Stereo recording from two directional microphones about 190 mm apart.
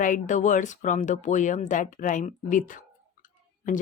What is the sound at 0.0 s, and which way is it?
Speech, 40° left (ahead or behind).